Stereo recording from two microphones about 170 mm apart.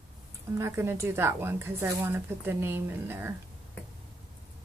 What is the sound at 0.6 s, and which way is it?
Speech, 15° right (ahead or behind).